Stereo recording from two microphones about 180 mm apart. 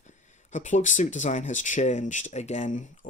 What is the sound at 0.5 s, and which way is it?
Speech, 45° left (ahead or behind).